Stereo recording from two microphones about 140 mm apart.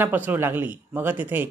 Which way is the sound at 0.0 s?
15° right (ahead or behind).